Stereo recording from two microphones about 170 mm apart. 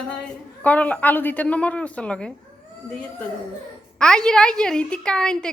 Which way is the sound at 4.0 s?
5° left (ahead or behind).